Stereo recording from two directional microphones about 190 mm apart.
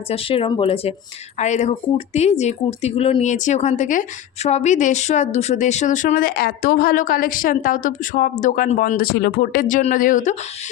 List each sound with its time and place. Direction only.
0.1 s speech: 30° left (ahead or behind); by 10.3 s 45° left (ahead or behind)